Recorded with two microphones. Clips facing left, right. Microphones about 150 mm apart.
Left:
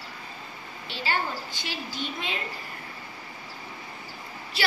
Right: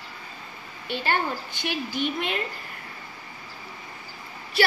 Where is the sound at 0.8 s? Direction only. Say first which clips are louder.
Right 4 dB; 55° right (ahead or behind).